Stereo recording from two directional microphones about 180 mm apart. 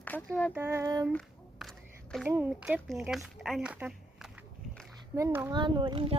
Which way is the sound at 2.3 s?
10° right (ahead or behind).